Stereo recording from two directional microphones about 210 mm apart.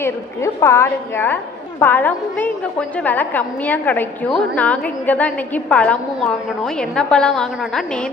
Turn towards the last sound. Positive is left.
turn(degrees=0)  # may be behind; listen again after turning